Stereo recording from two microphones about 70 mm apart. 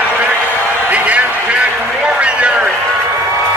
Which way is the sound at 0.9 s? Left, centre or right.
Centre.